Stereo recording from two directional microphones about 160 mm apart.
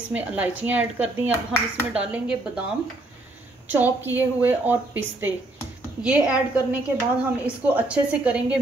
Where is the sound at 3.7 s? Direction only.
10° right (ahead or behind).